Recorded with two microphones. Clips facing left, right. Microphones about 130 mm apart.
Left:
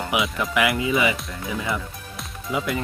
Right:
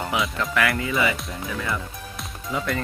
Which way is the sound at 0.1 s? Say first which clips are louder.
Left 2 dB; 15° left (ahead or behind).